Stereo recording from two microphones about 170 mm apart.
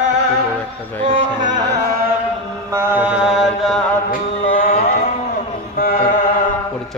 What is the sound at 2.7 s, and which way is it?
Mantra, 10° right (ahead or behind).